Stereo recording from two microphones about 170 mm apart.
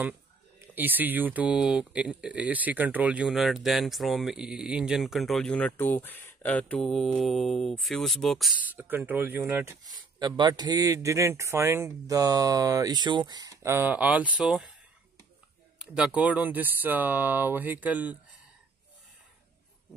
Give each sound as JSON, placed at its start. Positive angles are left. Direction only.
{"t": 0.6, "sound": "speech", "side_deg": -10}
{"t": 15.8, "sound": "speech", "side_deg": -5}